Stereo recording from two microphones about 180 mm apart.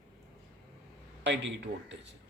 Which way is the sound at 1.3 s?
90° right.